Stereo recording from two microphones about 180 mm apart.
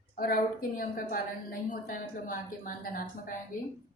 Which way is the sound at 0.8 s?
50° left (ahead or behind).